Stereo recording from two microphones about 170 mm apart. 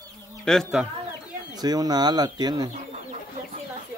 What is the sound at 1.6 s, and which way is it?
Speech, 25° right (ahead or behind).